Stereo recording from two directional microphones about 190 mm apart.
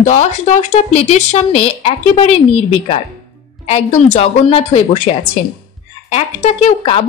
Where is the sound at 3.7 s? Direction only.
35° left (ahead or behind).